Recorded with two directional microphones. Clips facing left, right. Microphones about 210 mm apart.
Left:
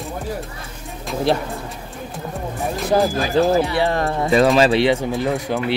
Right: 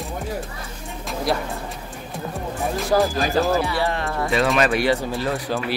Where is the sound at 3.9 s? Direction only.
35° left (ahead or behind); by 5.5 s 20° left (ahead or behind).